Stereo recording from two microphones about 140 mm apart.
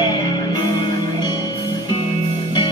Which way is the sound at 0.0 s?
25° left (ahead or behind).